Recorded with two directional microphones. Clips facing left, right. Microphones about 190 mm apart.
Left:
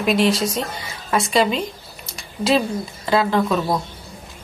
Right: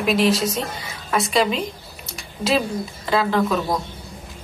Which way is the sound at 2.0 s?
Centre (ahead or behind).